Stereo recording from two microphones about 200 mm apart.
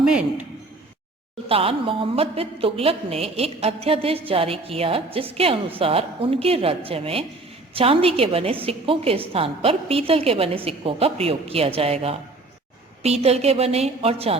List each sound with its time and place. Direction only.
0.0 s a man's voice: 5° right (ahead or behind)
1.5 s a woman's voice: 30° right (ahead or behind)